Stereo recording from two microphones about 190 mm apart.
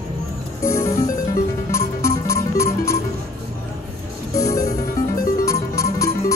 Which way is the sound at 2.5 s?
15° left (ahead or behind).